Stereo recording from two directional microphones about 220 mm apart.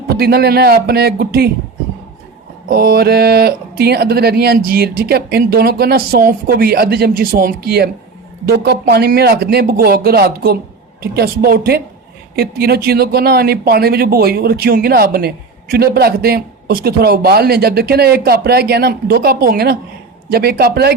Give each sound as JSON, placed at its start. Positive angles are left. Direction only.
{"t": 0.2, "sound": "speech", "side_deg": -45}
{"t": 2.6, "sound": "speech", "side_deg": -45}